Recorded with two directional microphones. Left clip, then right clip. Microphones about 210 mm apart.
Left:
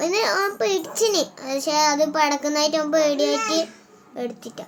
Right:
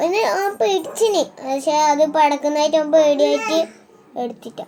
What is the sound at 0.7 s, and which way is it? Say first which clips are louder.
Speech: right 4 dB; 35° left (ahead or behind).